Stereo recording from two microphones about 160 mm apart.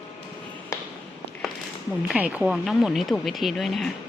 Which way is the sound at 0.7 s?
15° left (ahead or behind).